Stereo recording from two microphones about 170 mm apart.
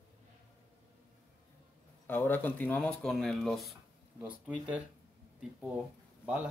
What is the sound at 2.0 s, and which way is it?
Speech, 10° left (ahead or behind).